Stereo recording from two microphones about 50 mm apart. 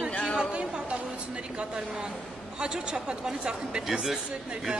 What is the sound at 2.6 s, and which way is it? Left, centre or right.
Speech, centre.